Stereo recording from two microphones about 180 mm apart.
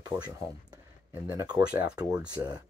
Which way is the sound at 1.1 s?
10° right (ahead or behind).